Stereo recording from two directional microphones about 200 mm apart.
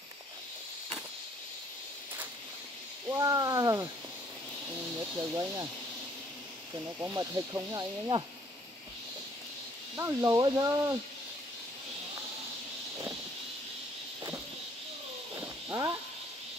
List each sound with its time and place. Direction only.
3.1 s speech: 15° right (ahead or behind)
5.1 s speech: 15° right (ahead or behind)
7.0 s speech: 15° right (ahead or behind)
9.9 s speech: 15° right (ahead or behind)